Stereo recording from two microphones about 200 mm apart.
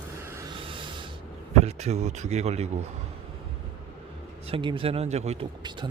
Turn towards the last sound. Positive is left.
turn(degrees=-35)  # may be behind; listen again after turning